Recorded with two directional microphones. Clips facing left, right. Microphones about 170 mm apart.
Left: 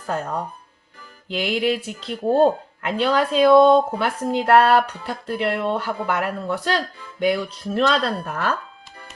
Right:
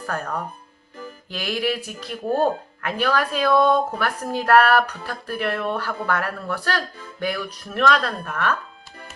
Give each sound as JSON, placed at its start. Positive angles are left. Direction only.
{"t": 0.1, "sound": "speech", "side_deg": 20}